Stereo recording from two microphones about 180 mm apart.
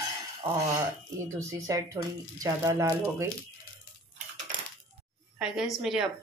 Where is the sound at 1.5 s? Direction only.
20° right (ahead or behind).